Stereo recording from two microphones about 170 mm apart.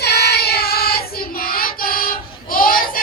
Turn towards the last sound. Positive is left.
turn(degrees=55)  # may be behind; listen again after turning